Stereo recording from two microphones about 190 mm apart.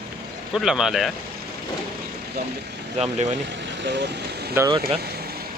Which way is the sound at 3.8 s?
65° right (ahead or behind).